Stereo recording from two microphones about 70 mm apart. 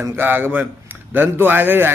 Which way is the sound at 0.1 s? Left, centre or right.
Right.